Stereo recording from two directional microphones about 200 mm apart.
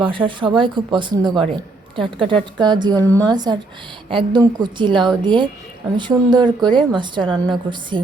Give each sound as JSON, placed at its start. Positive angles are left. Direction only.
{"t": 0.0, "sound": "a woman's voice", "side_deg": -25}